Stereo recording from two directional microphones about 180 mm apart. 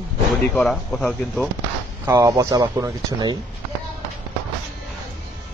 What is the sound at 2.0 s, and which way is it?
Speech, 20° right (ahead or behind).